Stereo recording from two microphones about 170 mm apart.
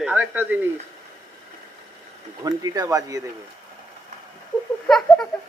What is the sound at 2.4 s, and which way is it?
Speech, 20° right (ahead or behind).